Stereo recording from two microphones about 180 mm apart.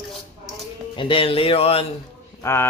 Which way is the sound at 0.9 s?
30° left (ahead or behind).